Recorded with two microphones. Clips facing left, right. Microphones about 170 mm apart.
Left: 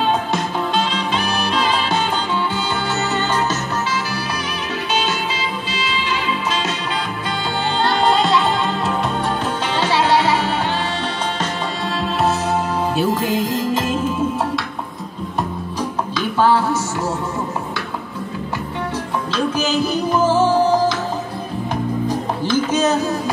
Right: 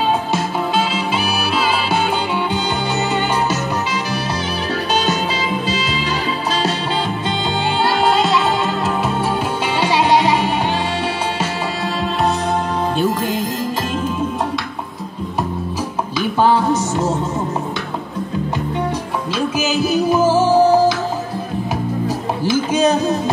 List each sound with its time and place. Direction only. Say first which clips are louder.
0.3 s music: right 1 dB; 5° right (ahead or behind)
7.8 s music: even; centre (ahead or behind)
9.8 s music: right 2 dB; 15° right (ahead or behind)
12.9 s music: left 1 dB; 5° left (ahead or behind)
16.2 s a sound: right 1 dB; 15° right (ahead or behind)
19.3 s music: even; 5° right (ahead or behind)
22.0 s music: right 1 dB; 10° right (ahead or behind)